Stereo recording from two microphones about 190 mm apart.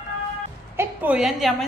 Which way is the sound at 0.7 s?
10° right (ahead or behind).